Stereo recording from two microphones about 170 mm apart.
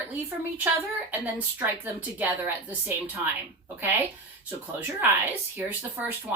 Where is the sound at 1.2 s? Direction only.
10° right (ahead or behind).